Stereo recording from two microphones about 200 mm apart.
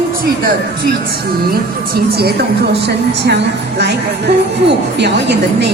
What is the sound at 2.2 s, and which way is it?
A woman's voice, 50° right (ahead or behind).